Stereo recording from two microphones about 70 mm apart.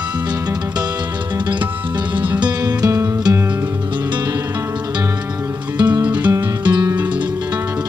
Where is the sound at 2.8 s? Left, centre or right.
Right.